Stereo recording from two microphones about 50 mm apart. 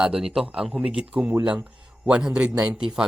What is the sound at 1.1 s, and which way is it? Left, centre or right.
Speech, right.